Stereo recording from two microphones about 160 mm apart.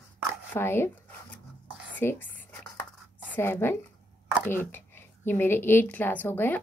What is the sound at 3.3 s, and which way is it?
A woman's voice, 10° left (ahead or behind).